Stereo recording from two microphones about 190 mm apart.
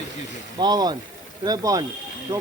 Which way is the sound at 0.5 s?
20° right (ahead or behind).